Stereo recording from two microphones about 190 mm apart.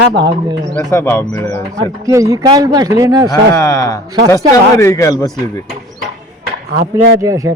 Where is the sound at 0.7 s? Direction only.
15° left (ahead or behind).